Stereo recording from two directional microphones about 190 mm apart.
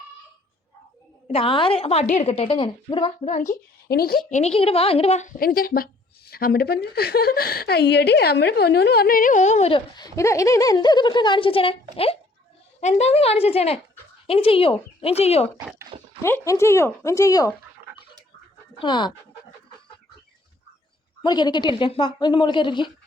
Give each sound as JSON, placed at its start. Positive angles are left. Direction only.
{"t": 1.3, "sound": "a woman's voice", "side_deg": 30}
{"t": 3.3, "sound": "a woman's voice", "side_deg": 40}
{"t": 3.8, "sound": "a woman's voice", "side_deg": 55}
{"t": 4.3, "sound": "a woman's voice", "side_deg": 35}
{"t": 5.4, "sound": "a woman's voice", "side_deg": 50}
{"t": 16.2, "sound": "speech", "side_deg": 15}
{"t": 18.8, "sound": "a woman's voice", "side_deg": 25}
{"t": 21.2, "sound": "a woman's voice", "side_deg": 20}